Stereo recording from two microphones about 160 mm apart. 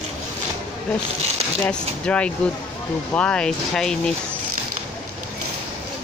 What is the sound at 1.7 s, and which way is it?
Speech, 5° left (ahead or behind).